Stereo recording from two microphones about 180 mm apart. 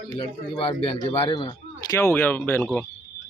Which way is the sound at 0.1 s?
30° left (ahead or behind).